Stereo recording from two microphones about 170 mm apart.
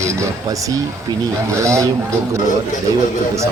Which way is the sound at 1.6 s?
15° right (ahead or behind).